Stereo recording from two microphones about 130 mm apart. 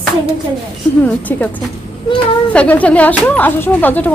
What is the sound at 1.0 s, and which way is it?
Speech, 15° left (ahead or behind).